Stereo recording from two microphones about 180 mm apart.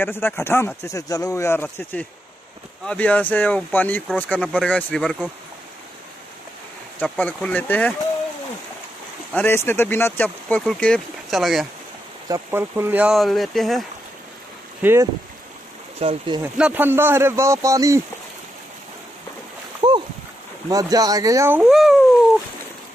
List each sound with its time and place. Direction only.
0.0 s speech: 10° left (ahead or behind)
7.0 s speech: 10° left (ahead or behind)
9.3 s speech: 10° left (ahead or behind)
12.3 s speech: 15° right (ahead or behind)
14.8 s speech: 15° right (ahead or behind)
16.0 s speech: 30° right (ahead or behind)
16.5 s speech: 10° right (ahead or behind)
19.8 s boat: 25° right (ahead or behind)
20.6 s speech: 20° right (ahead or behind); by 21.9 s centre (ahead or behind)